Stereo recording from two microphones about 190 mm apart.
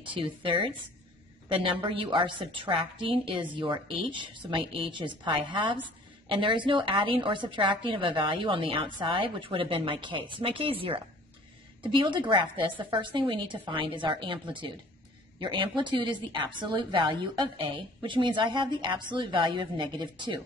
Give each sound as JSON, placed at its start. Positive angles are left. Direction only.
{"t": 0.0, "sound": "a woman's voice", "side_deg": -25}